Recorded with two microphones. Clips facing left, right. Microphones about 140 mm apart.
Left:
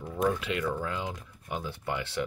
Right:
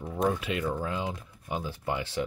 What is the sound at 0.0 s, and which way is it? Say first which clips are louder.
Speech: even; 25° right (ahead or behind).